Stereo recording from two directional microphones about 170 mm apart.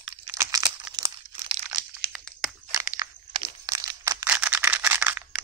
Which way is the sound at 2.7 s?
15° right (ahead or behind).